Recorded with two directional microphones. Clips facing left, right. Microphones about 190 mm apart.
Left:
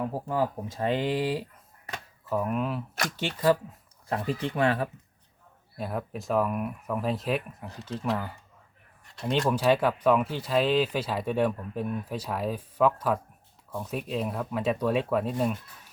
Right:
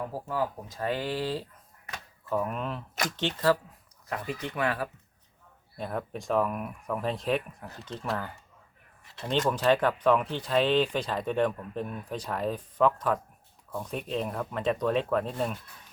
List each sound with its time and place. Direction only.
0.1 s speech: 25° left (ahead or behind)
4.1 s speech: 30° left (ahead or behind)
5.7 s speech: 5° left (ahead or behind)